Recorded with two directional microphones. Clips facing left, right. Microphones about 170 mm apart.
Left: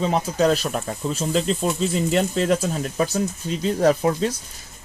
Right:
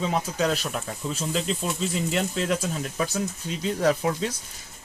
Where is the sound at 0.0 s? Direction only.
40° left (ahead or behind).